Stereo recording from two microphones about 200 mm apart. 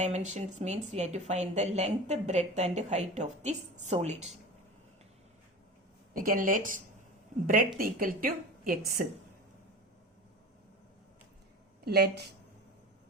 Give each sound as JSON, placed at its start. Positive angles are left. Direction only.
{"t": 0.0, "sound": "speech", "side_deg": -35}
{"t": 6.1, "sound": "a woman's voice", "side_deg": -45}
{"t": 11.9, "sound": "a woman's voice", "side_deg": -50}